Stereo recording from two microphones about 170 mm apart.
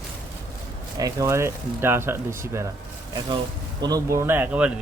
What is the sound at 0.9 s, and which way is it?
Speech, 20° right (ahead or behind).